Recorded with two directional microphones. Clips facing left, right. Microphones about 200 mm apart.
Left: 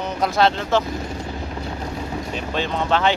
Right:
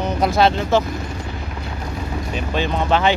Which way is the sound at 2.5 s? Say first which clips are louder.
Right 2 dB; 10° right (ahead or behind).